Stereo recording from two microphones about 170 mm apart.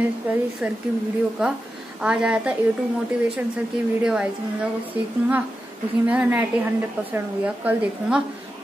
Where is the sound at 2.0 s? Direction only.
5° right (ahead or behind).